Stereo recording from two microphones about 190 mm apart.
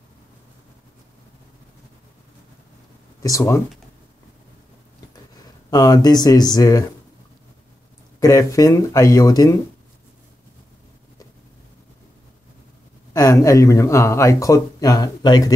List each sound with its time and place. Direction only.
3.2 s speech: 15° left (ahead or behind)
5.7 s speech: 20° left (ahead or behind)
8.2 s speech: 15° left (ahead or behind)
13.1 s speech: 20° left (ahead or behind)